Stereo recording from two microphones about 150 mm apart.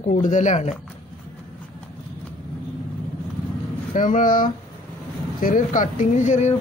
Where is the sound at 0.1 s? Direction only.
55° left (ahead or behind).